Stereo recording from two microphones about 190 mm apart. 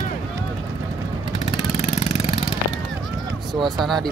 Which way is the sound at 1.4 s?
35° left (ahead or behind).